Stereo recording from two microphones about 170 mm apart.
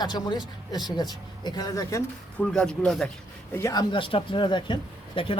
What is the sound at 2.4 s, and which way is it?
Speech, 5° left (ahead or behind).